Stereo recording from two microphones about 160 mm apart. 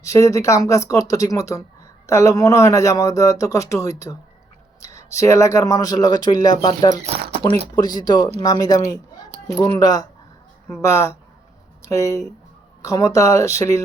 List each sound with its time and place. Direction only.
0.0 s speech: 20° left (ahead or behind)
6.9 s speech: 40° right (ahead or behind)
7.8 s speech: 25° left (ahead or behind)